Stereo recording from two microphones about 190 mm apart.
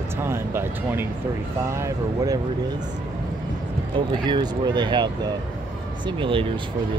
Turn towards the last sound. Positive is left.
turn(degrees=-25)  # may be behind; listen again after turning